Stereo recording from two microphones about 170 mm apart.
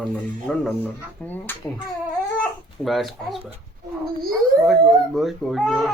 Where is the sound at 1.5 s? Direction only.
10° left (ahead or behind).